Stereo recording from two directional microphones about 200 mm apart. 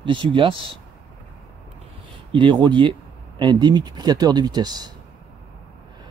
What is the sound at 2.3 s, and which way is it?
Speech, 25° right (ahead or behind).